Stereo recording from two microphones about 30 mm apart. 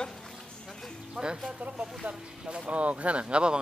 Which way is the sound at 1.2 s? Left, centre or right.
Centre.